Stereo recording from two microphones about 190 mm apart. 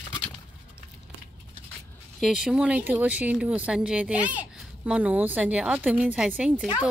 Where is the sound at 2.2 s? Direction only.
5° right (ahead or behind).